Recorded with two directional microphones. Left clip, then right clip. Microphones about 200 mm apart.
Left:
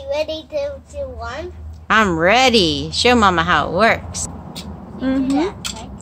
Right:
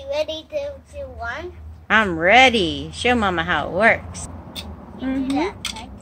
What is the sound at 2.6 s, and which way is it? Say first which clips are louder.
A woman's voice: left 5 dB; 20° left (ahead or behind).